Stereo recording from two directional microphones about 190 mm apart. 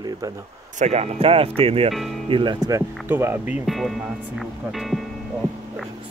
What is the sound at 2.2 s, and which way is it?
Speech, 25° right (ahead or behind).